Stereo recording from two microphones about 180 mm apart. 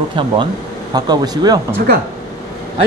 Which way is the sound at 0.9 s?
20° right (ahead or behind).